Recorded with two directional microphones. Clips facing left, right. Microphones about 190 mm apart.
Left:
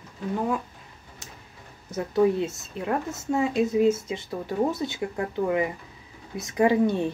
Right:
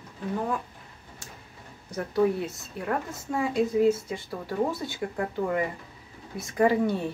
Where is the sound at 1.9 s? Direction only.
25° left (ahead or behind).